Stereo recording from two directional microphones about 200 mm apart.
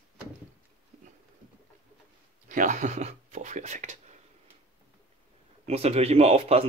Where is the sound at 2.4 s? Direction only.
40° right (ahead or behind).